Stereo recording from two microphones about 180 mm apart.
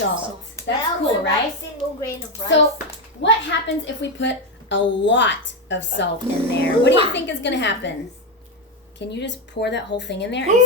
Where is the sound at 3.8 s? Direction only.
85° left.